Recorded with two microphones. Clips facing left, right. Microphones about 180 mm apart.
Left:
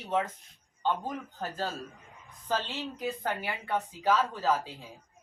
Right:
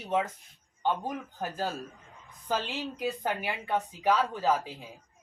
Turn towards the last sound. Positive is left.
turn(degrees=-15)  # may be behind; listen again after turning